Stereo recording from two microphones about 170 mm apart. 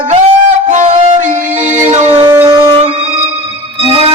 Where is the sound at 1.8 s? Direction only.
45° right (ahead or behind).